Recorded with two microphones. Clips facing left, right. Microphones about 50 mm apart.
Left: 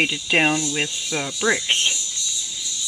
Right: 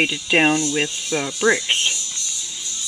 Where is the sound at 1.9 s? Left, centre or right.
Right.